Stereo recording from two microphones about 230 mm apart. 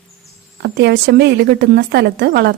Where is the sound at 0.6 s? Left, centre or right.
Right.